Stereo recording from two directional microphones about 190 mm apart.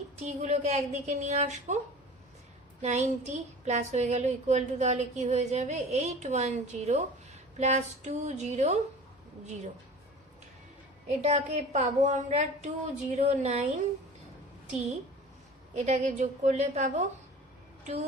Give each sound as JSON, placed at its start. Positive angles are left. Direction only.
{"t": 0.2, "sound": "speech", "side_deg": -35}
{"t": 2.8, "sound": "speech", "side_deg": -35}
{"t": 11.2, "sound": "speech", "side_deg": -35}
{"t": 15.7, "sound": "speech", "side_deg": -40}